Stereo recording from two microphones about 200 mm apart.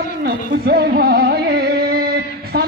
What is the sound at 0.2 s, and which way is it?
Music, 50° right (ahead or behind).